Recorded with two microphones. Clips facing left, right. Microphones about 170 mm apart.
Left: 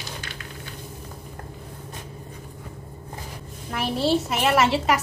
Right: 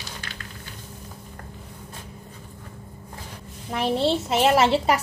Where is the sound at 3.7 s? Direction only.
25° right (ahead or behind).